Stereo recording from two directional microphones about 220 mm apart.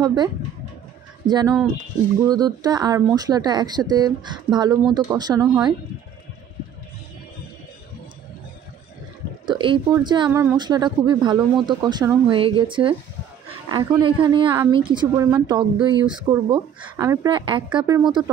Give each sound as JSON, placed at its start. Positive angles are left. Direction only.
{"t": 0.0, "sound": "speech", "side_deg": -20}
{"t": 9.5, "sound": "speech", "side_deg": -20}